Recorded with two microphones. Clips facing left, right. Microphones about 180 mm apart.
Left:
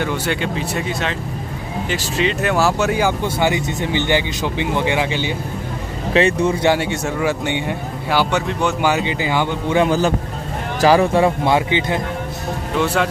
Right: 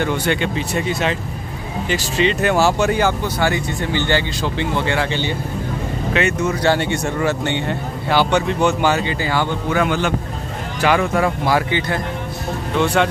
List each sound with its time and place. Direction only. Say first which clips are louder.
0.0 s speech: right 2 dB; 5° left (ahead or behind)
3.1 s speech: left 1 dB; 15° left (ahead or behind)
6.1 s speech: left 4 dB; 30° left (ahead or behind)
6.6 s speech: even; 10° left (ahead or behind)
8.8 s speech: even; 15° left (ahead or behind)
12.7 s speech: right 2 dB; 5° left (ahead or behind)